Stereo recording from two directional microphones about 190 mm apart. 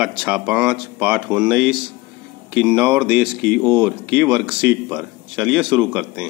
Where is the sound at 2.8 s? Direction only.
10° right (ahead or behind).